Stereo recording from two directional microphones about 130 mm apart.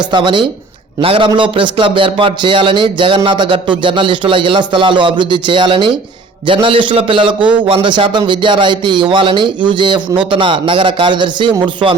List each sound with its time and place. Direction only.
0.1 s a man's voice: 35° right (ahead or behind)